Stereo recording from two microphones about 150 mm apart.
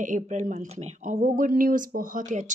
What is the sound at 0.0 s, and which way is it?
Speech, 55° right (ahead or behind).